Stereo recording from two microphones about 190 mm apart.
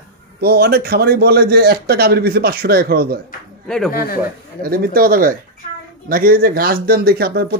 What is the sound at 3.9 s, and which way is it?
Speech, 50° left (ahead or behind).